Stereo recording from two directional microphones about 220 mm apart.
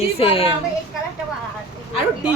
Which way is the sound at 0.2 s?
25° left (ahead or behind).